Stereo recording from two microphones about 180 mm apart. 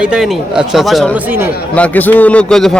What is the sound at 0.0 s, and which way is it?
A man's voice, 5° right (ahead or behind).